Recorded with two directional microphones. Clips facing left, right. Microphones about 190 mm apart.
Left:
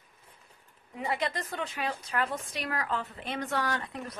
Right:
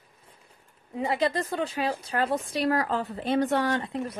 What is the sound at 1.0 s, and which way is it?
A woman's voice, 30° right (ahead or behind).